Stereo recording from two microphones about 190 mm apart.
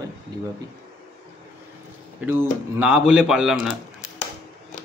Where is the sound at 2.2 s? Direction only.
10° right (ahead or behind).